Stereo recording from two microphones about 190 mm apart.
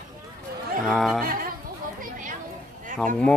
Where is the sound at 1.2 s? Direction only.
50° right (ahead or behind).